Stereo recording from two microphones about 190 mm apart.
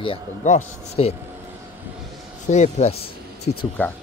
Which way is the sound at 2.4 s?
40° left (ahead or behind).